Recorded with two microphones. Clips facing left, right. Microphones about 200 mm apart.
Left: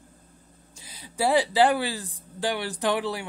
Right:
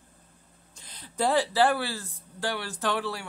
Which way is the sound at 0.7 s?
10° left (ahead or behind).